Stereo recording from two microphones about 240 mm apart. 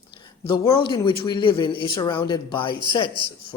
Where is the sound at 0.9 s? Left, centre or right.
Centre.